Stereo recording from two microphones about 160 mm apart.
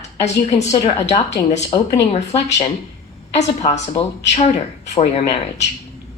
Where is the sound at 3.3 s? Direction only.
45° left (ahead or behind).